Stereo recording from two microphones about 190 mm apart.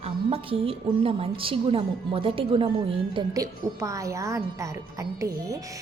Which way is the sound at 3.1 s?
20° right (ahead or behind).